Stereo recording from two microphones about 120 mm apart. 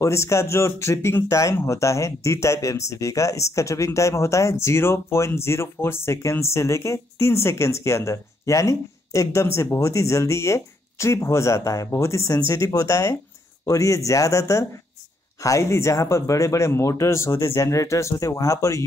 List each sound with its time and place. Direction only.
0.0 s speech: 25° left (ahead or behind)